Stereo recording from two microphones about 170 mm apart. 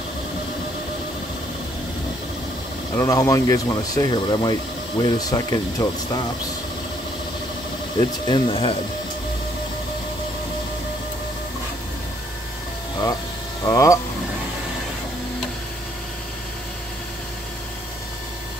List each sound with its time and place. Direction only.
3.0 s speech: 20° left (ahead or behind)
8.0 s speech: 30° left (ahead or behind)
13.7 s speech: 20° left (ahead or behind)